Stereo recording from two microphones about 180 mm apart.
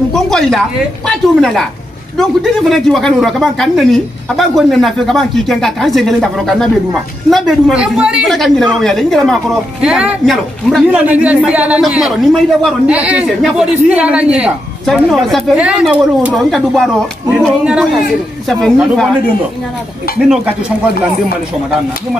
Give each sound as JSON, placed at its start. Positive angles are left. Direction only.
{"t": 0.1, "sound": "a woman's voice", "side_deg": 5}